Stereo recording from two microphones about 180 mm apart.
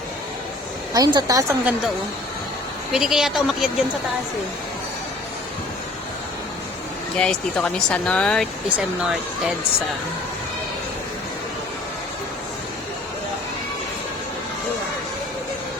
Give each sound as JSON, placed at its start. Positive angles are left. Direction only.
{"t": 0.9, "sound": "a woman's voice", "side_deg": -20}
{"t": 2.9, "sound": "speech", "side_deg": -5}
{"t": 7.2, "sound": "speech", "side_deg": 5}